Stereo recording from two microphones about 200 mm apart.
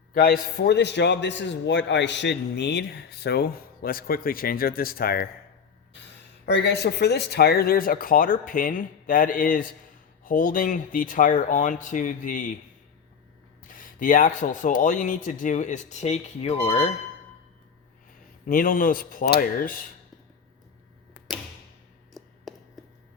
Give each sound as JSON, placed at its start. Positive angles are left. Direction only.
{"t": 0.1, "sound": "a man's voice", "side_deg": 50}
{"t": 6.4, "sound": "speech", "side_deg": 55}
{"t": 13.7, "sound": "speech", "side_deg": 40}
{"t": 18.4, "sound": "speech", "side_deg": 45}
{"t": 22.1, "sound": "a sound", "side_deg": 0}